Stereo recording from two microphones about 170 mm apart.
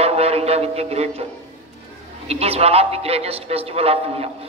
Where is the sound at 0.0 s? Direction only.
35° right (ahead or behind).